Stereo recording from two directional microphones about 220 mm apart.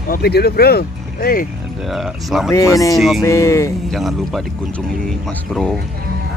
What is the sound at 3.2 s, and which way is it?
Speech, 15° left (ahead or behind).